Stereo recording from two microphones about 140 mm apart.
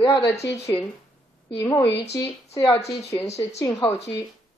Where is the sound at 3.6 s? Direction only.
25° left (ahead or behind).